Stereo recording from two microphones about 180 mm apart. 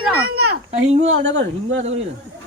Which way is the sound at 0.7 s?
35° right (ahead or behind).